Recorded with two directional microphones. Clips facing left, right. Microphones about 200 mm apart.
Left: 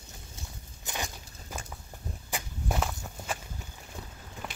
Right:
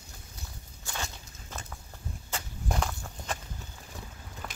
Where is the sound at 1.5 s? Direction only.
10° left (ahead or behind).